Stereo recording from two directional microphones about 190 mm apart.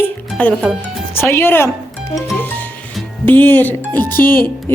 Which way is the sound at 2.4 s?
10° left (ahead or behind).